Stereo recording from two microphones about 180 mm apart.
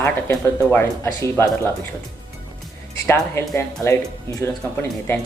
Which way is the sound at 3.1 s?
15° left (ahead or behind).